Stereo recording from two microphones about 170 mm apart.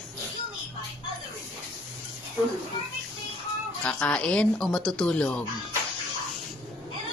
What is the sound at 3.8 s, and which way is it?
Speech, 5° left (ahead or behind).